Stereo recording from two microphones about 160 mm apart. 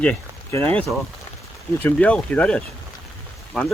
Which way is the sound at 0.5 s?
15° left (ahead or behind).